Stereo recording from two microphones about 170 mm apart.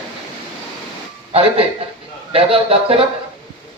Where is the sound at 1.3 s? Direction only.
35° right (ahead or behind).